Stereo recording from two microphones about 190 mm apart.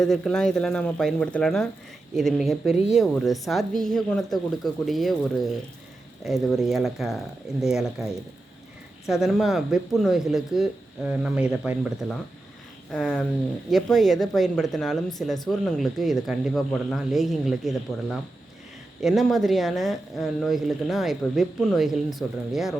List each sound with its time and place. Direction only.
0.0 s speech: 5° left (ahead or behind)
9.0 s speech: centre (ahead or behind)
12.9 s speech: 5° left (ahead or behind)